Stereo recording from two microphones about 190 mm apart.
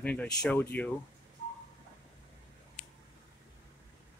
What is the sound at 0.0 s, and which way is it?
Speech, 5° left (ahead or behind).